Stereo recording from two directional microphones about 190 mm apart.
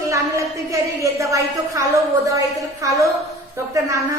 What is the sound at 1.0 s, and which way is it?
A woman's voice, 15° right (ahead or behind).